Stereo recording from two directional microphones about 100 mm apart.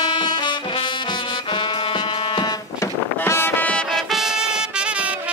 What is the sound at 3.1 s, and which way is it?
Music, 25° left (ahead or behind).